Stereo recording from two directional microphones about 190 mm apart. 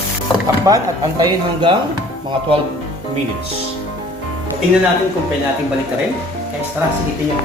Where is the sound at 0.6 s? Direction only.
20° right (ahead or behind).